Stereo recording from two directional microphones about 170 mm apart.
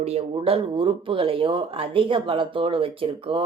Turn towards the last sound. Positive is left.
turn(degrees=-30)  # may be behind; listen again after turning